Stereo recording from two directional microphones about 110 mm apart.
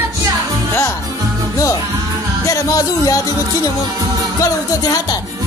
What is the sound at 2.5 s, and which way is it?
Music, 30° left (ahead or behind).